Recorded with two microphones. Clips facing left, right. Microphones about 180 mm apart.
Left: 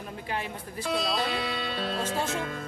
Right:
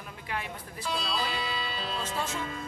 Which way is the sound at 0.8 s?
65° left (ahead or behind).